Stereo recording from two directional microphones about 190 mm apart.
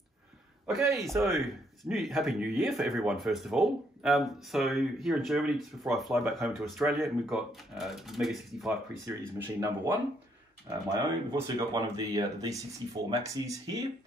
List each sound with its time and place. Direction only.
0.9 s speech: centre (ahead or behind)
9.0 s speech: 15° right (ahead or behind)